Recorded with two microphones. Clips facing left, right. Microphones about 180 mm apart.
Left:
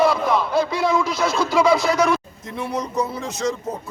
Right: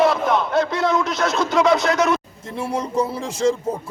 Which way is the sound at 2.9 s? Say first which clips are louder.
Right 2 dB; 30° right (ahead or behind).